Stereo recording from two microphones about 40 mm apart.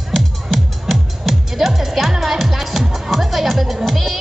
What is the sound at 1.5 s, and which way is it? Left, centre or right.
Music, centre.